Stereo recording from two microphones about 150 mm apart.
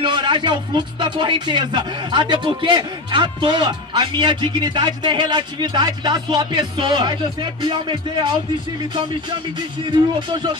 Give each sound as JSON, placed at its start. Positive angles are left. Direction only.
{"t": 0.0, "sound": "speech", "side_deg": -30}
{"t": 9.8, "sound": "speech", "side_deg": -30}